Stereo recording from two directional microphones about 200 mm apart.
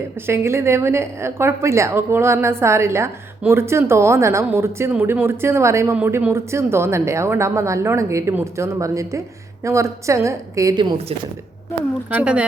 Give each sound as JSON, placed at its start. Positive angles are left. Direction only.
{"t": 0.3, "sound": "a woman's voice", "side_deg": -15}
{"t": 12.1, "sound": "speech", "side_deg": -5}